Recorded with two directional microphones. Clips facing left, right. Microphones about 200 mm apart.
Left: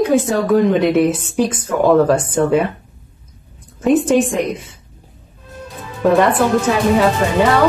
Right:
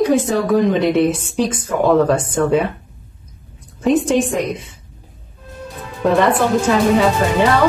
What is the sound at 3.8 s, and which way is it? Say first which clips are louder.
Speech: left 2 dB; 5° left (ahead or behind).